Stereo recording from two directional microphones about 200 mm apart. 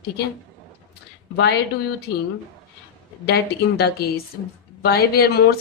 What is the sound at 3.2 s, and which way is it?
A woman's voice, 55° left (ahead or behind).